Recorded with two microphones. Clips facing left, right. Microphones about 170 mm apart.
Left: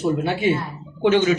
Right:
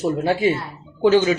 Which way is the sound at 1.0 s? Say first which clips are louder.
Right 2 dB; 35° right (ahead or behind).